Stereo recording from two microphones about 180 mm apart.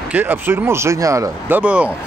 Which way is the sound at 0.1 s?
10° right (ahead or behind).